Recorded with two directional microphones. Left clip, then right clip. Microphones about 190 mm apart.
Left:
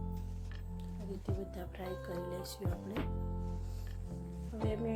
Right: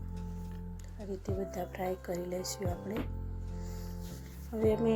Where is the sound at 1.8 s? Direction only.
15° right (ahead or behind).